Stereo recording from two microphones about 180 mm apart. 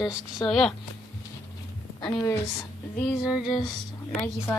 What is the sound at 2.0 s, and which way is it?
Speech, 15° left (ahead or behind).